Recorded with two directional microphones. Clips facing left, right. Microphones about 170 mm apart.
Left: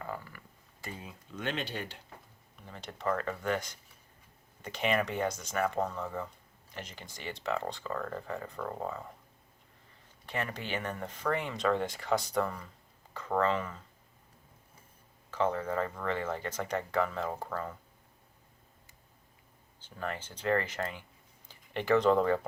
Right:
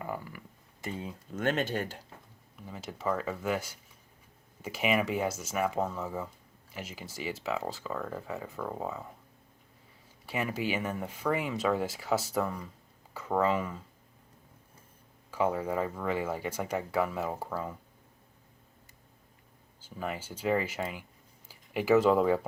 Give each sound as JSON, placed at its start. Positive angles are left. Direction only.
{"t": 0.0, "sound": "a sound", "side_deg": -15}
{"t": 1.4, "sound": "speech", "side_deg": -45}
{"t": 2.6, "sound": "speech", "side_deg": -5}
{"t": 10.2, "sound": "speech", "side_deg": -5}
{"t": 15.3, "sound": "speech", "side_deg": -10}
{"t": 19.8, "sound": "speech", "side_deg": -10}